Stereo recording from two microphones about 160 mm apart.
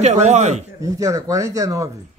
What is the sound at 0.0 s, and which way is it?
Speech, 45° right (ahead or behind).